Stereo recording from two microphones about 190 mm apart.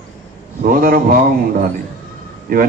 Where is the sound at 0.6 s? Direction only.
50° right (ahead or behind).